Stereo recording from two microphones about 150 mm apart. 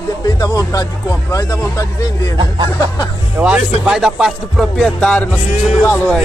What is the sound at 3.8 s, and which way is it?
Speech, 5° right (ahead or behind).